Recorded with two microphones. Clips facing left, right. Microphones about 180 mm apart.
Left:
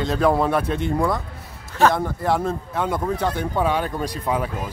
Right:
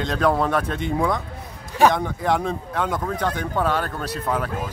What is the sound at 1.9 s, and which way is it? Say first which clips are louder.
Speech: even; 5° left (ahead or behind).